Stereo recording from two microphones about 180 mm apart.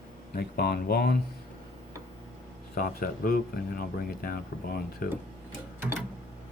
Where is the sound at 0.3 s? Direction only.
60° left (ahead or behind).